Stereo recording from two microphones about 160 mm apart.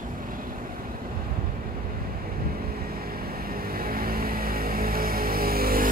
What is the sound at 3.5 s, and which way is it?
Vehicle, 65° right (ahead or behind).